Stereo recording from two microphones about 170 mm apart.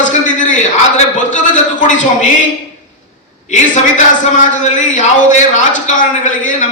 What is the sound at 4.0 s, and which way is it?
A man's voice, 50° left (ahead or behind).